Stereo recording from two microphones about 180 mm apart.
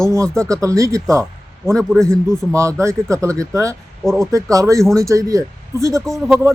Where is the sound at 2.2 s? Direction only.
15° right (ahead or behind).